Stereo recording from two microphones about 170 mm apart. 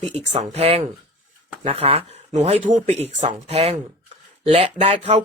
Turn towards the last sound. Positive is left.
turn(degrees=-40)  # may be behind; listen again after turning